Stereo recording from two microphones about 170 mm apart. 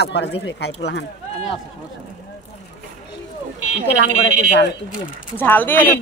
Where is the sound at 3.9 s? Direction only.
85° left.